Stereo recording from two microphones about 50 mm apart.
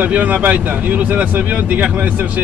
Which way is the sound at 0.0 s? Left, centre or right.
Right.